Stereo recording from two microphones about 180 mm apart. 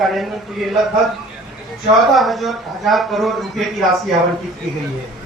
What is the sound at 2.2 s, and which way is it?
Speech, centre (ahead or behind).